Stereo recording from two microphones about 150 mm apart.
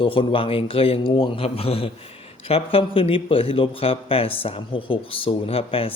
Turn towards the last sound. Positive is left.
turn(degrees=40)  # may be behind; listen again after turning